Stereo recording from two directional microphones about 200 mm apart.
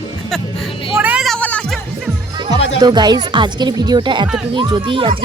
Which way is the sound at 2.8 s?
20° right (ahead or behind).